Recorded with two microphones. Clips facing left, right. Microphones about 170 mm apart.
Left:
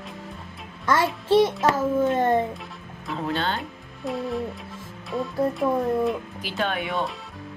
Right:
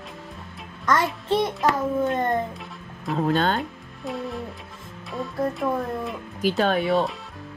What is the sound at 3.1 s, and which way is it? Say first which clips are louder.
Speech: right 5 dB; 45° right (ahead or behind).